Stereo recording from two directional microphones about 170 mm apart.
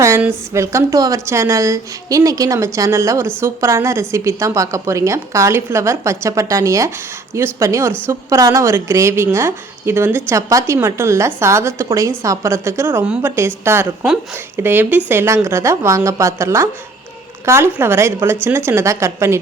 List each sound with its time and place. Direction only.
0.0 s a woman's voice: 15° right (ahead or behind)